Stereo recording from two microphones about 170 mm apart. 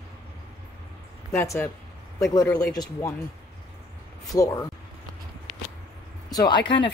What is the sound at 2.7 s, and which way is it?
Speech, 20° left (ahead or behind).